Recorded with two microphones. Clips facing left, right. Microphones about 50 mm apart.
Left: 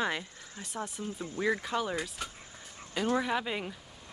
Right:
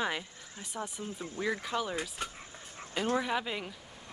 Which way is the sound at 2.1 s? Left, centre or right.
Right.